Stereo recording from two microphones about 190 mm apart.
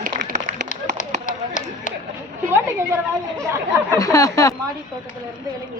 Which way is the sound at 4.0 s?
15° left (ahead or behind).